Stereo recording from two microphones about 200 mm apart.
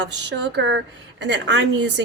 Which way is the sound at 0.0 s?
60° right (ahead or behind).